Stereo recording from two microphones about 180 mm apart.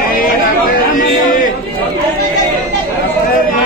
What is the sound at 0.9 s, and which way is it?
Speech, 45° left (ahead or behind).